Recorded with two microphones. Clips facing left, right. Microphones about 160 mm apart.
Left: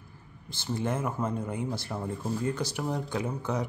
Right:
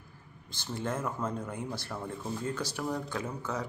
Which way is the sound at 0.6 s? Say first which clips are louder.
Left 4 dB; 10° left (ahead or behind).